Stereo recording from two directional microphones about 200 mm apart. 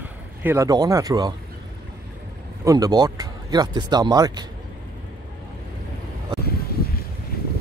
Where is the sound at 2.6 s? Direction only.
20° right (ahead or behind).